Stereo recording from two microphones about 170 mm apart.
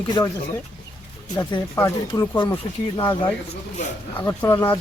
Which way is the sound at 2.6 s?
30° left (ahead or behind).